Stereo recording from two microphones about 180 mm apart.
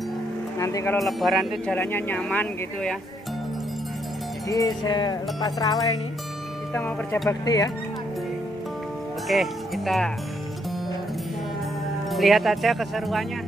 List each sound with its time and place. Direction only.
0.6 s speech: 15° left (ahead or behind)
0.9 s speech: centre (ahead or behind)
1.8 s speech: 10° left (ahead or behind)
4.5 s music: 20° left (ahead or behind)
6.7 s speech: 10° left (ahead or behind)
7.2 s music: 20° left (ahead or behind)
9.3 s speech: centre (ahead or behind)
12.1 s speech: centre (ahead or behind)